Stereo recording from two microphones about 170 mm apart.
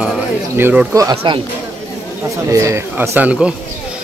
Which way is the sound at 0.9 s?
20° right (ahead or behind).